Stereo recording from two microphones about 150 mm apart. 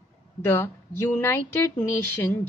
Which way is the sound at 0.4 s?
15° left (ahead or behind).